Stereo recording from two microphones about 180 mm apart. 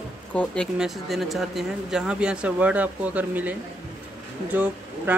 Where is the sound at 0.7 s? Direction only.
Centre (ahead or behind).